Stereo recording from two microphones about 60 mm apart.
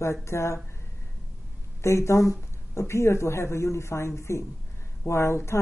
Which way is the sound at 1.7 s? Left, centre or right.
Left.